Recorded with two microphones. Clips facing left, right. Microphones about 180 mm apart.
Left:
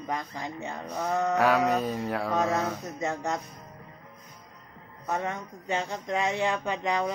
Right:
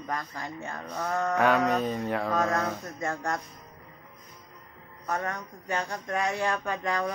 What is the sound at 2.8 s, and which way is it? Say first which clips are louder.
Speech: left 1 dB; 20° left (ahead or behind).